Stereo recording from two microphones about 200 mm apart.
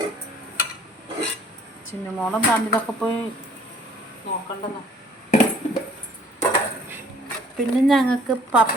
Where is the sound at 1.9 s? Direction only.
Centre (ahead or behind).